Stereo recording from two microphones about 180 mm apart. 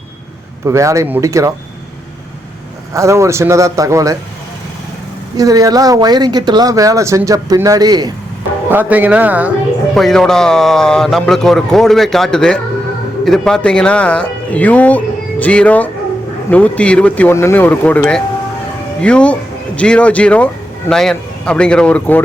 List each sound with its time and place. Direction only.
0.6 s a man's voice: 15° right (ahead or behind)
2.9 s a man's voice: 15° right (ahead or behind)
5.4 s speech: 20° right (ahead or behind)
8.7 s a man's voice: 10° right (ahead or behind)
9.9 s a man's voice: centre (ahead or behind)